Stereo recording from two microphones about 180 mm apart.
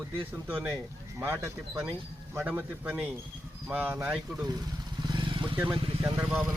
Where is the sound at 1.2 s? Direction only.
15° right (ahead or behind).